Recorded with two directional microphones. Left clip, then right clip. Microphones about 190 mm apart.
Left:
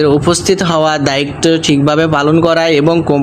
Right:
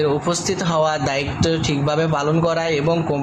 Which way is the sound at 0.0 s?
40° left (ahead or behind).